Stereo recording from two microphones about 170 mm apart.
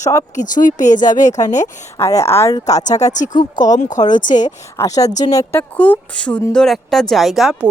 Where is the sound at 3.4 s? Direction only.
25° left (ahead or behind).